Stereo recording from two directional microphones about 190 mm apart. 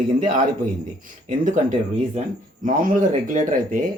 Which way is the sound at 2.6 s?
45° right (ahead or behind).